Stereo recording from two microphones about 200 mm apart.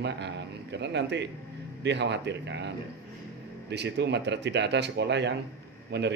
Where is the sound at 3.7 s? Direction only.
60° right (ahead or behind).